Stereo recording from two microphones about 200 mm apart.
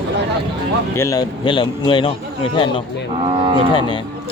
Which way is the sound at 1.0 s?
15° left (ahead or behind).